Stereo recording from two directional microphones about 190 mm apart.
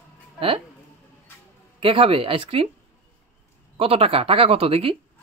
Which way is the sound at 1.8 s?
30° right (ahead or behind).